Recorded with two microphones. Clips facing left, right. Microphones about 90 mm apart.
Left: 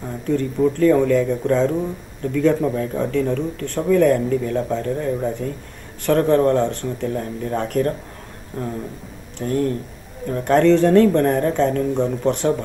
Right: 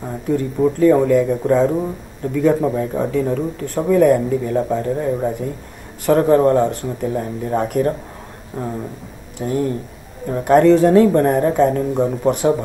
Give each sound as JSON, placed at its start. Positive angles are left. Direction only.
{"t": 0.0, "sound": "speech", "side_deg": -15}